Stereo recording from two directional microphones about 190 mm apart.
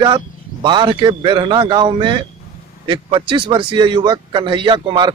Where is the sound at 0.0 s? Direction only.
25° right (ahead or behind).